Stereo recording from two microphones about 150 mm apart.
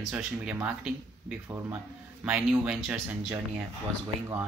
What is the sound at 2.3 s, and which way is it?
Speech, 5° right (ahead or behind).